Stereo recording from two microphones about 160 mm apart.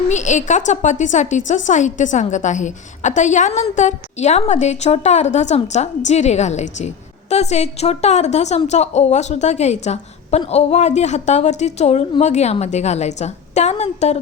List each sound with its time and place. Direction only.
0.1 s a woman's voice: 50° left (ahead or behind)